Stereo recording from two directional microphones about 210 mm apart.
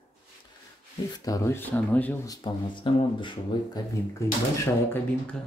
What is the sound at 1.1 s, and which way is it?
Speech, 15° left (ahead or behind).